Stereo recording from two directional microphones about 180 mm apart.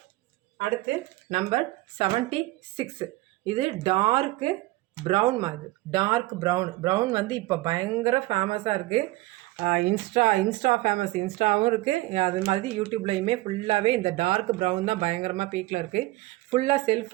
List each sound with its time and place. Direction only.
1.3 s speech: 40° right (ahead or behind)
9.6 s speech: 40° right (ahead or behind)